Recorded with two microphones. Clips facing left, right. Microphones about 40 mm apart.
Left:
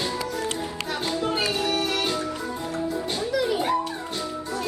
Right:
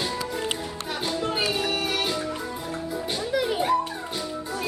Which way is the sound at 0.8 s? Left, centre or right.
Centre.